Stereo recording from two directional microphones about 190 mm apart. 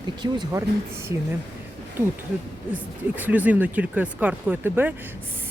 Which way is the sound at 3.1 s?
10° right (ahead or behind).